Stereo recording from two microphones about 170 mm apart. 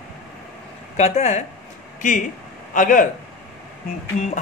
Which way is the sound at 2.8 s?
50° left (ahead or behind).